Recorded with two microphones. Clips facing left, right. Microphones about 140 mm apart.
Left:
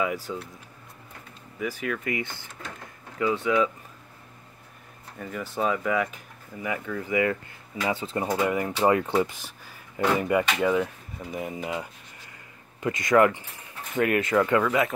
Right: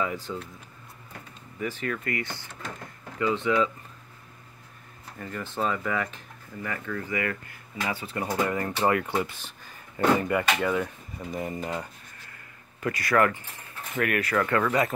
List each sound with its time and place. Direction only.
0.0 s speech: 10° left (ahead or behind)
1.6 s speech: 10° left (ahead or behind)
5.2 s speech: 5° left (ahead or behind)
12.8 s speech: 20° left (ahead or behind)
14.6 s speech: centre (ahead or behind)